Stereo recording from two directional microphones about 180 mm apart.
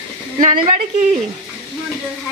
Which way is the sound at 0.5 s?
35° right (ahead or behind).